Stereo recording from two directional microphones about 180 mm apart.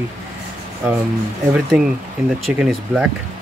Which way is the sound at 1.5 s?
5° right (ahead or behind).